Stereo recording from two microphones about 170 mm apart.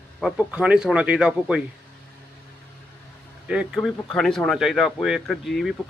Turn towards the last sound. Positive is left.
turn(degrees=0)  # may be behind; listen again after turning